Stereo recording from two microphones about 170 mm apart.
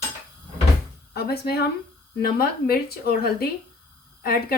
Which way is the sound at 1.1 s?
70° left (ahead or behind).